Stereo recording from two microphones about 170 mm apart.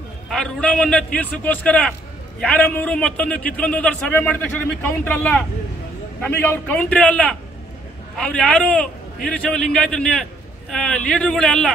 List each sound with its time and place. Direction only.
0.3 s a man's voice: 5° left (ahead or behind)